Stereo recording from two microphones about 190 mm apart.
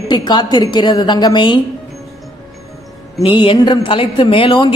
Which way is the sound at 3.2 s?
25° left (ahead or behind).